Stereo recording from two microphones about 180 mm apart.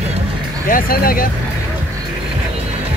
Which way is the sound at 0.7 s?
50° left (ahead or behind).